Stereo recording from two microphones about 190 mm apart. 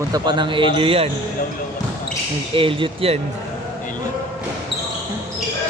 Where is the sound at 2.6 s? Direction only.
25° right (ahead or behind).